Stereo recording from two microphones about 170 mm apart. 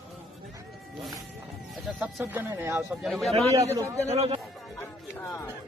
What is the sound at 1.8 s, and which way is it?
Speech, 5° right (ahead or behind).